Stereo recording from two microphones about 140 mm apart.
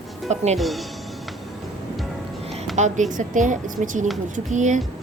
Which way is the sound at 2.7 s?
60° right (ahead or behind).